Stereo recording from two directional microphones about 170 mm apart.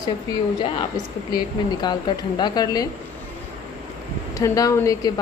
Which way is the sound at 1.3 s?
25° left (ahead or behind).